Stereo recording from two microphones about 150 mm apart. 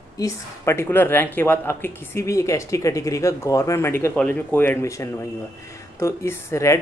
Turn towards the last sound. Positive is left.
turn(degrees=20)  # may be behind; listen again after turning